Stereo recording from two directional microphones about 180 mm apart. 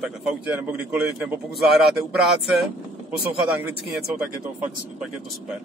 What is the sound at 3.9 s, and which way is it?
A man's voice, 5° right (ahead or behind).